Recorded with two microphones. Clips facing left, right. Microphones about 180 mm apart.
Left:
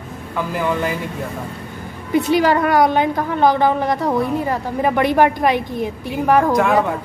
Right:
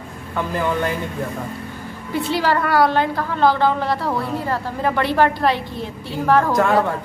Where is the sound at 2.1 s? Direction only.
15° left (ahead or behind).